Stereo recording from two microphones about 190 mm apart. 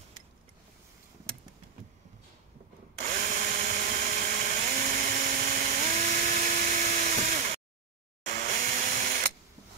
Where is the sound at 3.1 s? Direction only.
45° right (ahead or behind).